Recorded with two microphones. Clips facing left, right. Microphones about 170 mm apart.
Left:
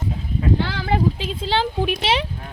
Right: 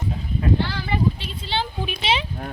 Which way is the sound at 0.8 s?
90° left.